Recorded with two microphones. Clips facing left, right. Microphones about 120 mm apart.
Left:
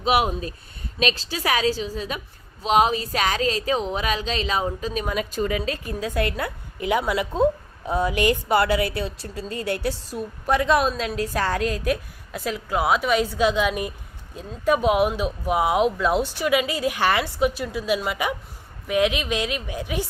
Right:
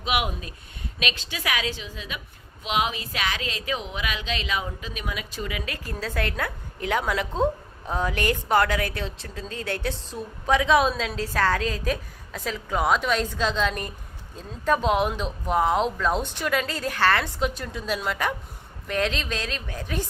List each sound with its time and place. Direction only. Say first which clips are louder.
0.0 s speech: left 6 dB; 35° left (ahead or behind)
5.9 s speech: left 3 dB; 15° left (ahead or behind)